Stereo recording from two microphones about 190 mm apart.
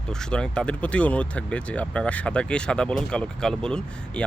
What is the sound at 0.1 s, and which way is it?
Speech, 5° left (ahead or behind).